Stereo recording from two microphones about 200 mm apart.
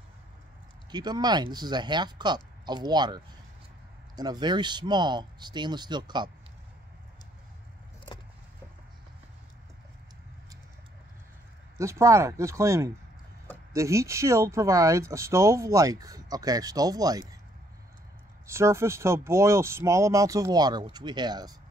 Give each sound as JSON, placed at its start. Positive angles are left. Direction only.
{"t": 0.9, "sound": "speech", "side_deg": -20}
{"t": 4.2, "sound": "speech", "side_deg": -20}
{"t": 11.8, "sound": "speech", "side_deg": -15}
{"t": 18.5, "sound": "speech", "side_deg": -15}